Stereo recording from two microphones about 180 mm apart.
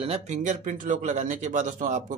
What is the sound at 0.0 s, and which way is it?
Speech, 35° right (ahead or behind).